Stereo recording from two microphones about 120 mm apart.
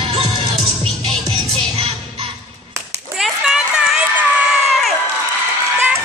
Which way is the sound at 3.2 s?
5° right (ahead or behind).